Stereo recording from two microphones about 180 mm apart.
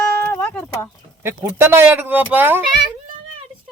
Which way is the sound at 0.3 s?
10° left (ahead or behind).